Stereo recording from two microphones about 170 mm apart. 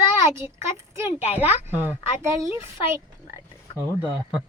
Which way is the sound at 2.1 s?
15° right (ahead or behind).